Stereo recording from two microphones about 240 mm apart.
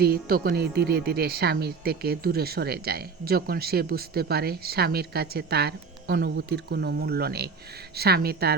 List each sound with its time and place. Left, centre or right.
0.0 s speech: right